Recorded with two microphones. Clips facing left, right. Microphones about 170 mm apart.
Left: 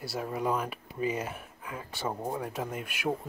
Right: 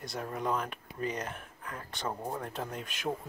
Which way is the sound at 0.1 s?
5° left (ahead or behind).